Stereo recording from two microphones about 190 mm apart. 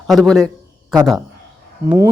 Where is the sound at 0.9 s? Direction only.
Centre (ahead or behind).